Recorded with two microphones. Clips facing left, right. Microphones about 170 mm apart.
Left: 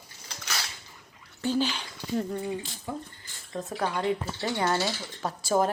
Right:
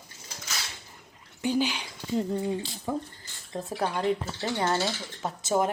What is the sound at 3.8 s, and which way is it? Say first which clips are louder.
Speech: right 1 dB; 30° right (ahead or behind).